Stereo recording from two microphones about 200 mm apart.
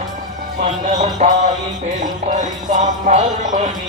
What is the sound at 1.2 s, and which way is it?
Speech, 30° right (ahead or behind).